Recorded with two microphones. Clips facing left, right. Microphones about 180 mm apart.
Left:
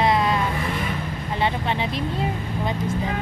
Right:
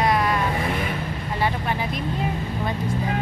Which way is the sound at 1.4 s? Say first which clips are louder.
Left 1 dB; 25° left (ahead or behind).